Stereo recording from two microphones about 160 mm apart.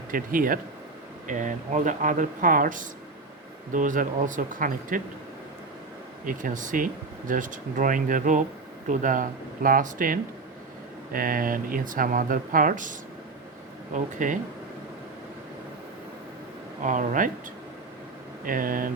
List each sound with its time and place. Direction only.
0.1 s speech: 60° right (ahead or behind)
6.2 s speech: 55° right (ahead or behind)
16.8 s speech: 55° right (ahead or behind)
18.4 s speech: 60° right (ahead or behind)